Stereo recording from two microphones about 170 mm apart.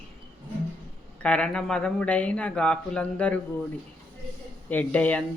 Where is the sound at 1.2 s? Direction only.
5° left (ahead or behind).